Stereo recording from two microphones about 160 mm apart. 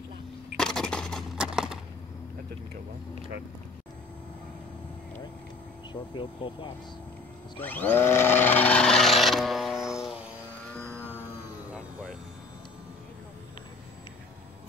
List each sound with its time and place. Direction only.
0.6 s a sound: 5° left (ahead or behind)
6.1 s speech: 30° left (ahead or behind)
7.5 s tools: 10° left (ahead or behind)
11.7 s vehicle: 10° right (ahead or behind)